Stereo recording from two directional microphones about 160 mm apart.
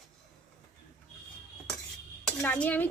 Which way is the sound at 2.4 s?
10° left (ahead or behind).